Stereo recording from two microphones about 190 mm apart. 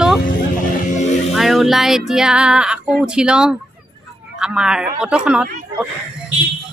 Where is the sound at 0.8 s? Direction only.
40° left (ahead or behind).